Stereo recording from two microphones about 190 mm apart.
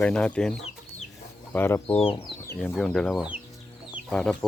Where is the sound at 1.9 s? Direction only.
25° left (ahead or behind).